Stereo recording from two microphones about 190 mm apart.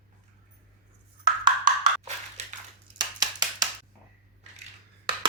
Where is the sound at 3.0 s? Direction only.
20° right (ahead or behind).